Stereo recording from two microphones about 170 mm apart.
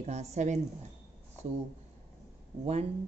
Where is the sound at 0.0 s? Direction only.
40° right (ahead or behind).